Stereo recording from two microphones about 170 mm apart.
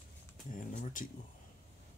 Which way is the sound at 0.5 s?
50° left (ahead or behind).